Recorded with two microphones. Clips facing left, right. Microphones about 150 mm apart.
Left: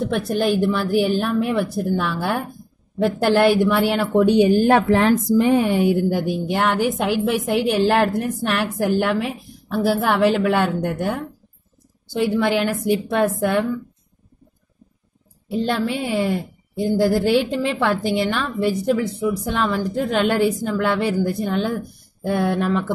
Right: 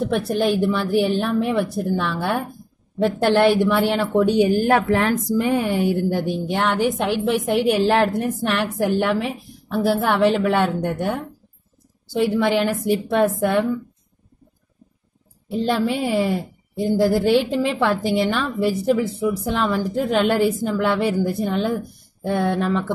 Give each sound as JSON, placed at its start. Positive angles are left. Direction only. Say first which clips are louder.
{"t": 0.0, "sound": "a woman's voice", "louder": "even", "side_deg": 0}
{"t": 4.1, "sound": "speech", "louder": "left 3 dB", "side_deg": 20}
{"t": 6.1, "sound": "a woman's voice", "louder": "left 1 dB", "side_deg": 5}
{"t": 15.4, "sound": "a woman's voice", "louder": "right 1 dB", "side_deg": 0}